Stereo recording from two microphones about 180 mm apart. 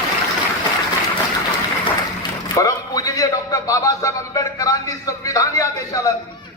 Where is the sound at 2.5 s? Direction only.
20° left (ahead or behind).